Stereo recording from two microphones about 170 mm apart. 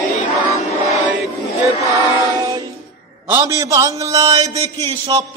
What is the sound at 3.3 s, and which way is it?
A man's voice, 15° right (ahead or behind).